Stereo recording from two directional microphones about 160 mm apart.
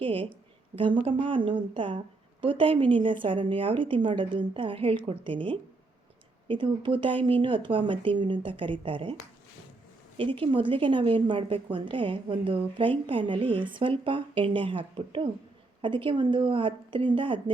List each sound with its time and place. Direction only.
0.0 s a woman's voice: 35° right (ahead or behind)
10.2 s speech: 35° right (ahead or behind)